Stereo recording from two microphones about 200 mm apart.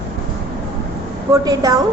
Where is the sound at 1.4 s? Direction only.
15° right (ahead or behind).